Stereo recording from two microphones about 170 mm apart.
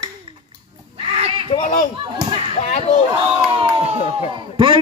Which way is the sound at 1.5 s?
45° left (ahead or behind).